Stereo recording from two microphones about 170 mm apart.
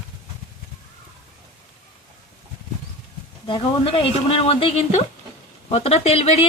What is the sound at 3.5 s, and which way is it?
Speech, 30° left (ahead or behind).